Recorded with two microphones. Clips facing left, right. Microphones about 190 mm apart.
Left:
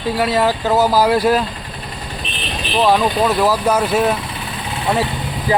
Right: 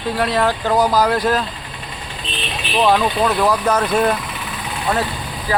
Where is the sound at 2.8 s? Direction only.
Centre (ahead or behind).